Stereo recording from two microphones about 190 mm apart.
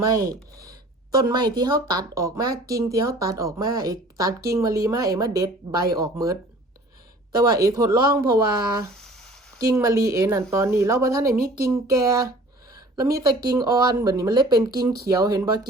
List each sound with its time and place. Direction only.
0.1 s speech: 20° right (ahead or behind)
7.3 s speech: 20° right (ahead or behind)
9.0 s a sound: centre (ahead or behind)
9.6 s speech: 15° right (ahead or behind)